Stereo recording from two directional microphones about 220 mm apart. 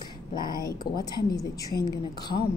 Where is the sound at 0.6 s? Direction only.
15° left (ahead or behind).